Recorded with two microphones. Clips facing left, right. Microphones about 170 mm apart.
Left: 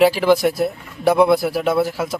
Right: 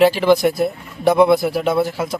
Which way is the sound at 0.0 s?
5° left (ahead or behind).